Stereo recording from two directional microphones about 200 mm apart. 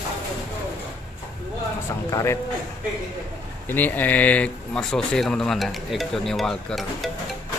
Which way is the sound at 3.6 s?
10° left (ahead or behind).